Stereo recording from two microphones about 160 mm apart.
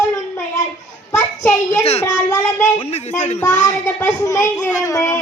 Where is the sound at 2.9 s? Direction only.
45° left (ahead or behind).